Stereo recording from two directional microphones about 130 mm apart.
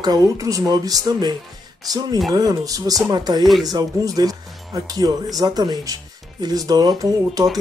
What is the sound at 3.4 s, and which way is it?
Speech, centre (ahead or behind).